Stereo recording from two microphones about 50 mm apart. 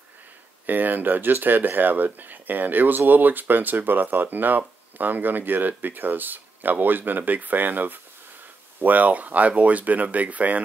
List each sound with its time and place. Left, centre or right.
0.7 s speech: right